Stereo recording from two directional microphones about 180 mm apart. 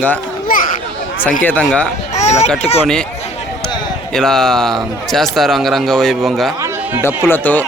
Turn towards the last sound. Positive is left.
turn(degrees=10)  # may be behind; listen again after turning